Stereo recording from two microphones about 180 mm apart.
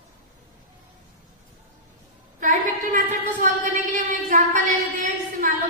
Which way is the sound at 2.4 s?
45° right (ahead or behind).